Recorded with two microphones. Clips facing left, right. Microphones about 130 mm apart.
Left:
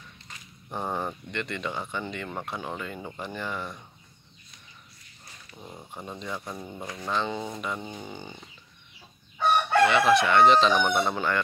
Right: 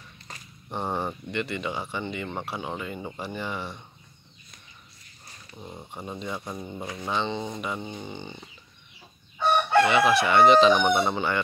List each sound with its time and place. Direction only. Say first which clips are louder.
0.3 s a sound: right 5 dB; 40° right (ahead or behind)
0.8 s speech: right 2 dB; 5° right (ahead or behind)
5.6 s speech: right 2 dB; 5° right (ahead or behind)
9.8 s speech: even; 5° right (ahead or behind)